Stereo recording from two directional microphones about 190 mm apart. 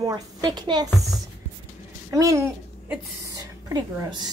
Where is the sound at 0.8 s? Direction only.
Centre (ahead or behind).